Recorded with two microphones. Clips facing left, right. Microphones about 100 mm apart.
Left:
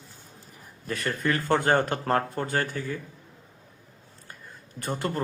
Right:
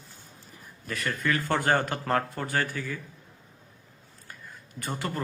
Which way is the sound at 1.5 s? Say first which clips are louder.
Left 4 dB; 25° left (ahead or behind).